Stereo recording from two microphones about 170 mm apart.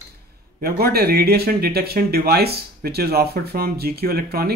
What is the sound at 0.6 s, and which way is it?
Speech, 65° right (ahead or behind).